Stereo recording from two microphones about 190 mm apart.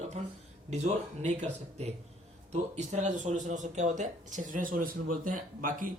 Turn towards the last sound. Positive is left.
turn(degrees=-45)  # may be behind; listen again after turning